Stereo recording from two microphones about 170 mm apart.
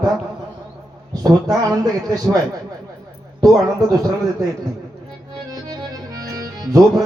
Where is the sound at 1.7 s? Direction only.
20° right (ahead or behind).